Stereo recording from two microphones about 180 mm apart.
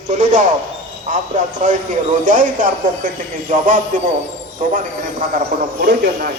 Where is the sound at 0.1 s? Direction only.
45° right (ahead or behind).